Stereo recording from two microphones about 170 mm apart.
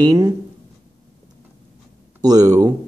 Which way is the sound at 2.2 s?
20° right (ahead or behind).